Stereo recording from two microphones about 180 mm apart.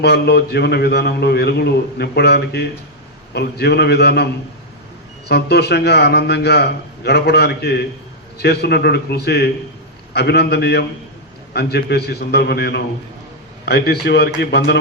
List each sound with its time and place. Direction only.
0.0 s a man's voice: 65° left (ahead or behind)
5.3 s a man's voice: 65° left (ahead or behind)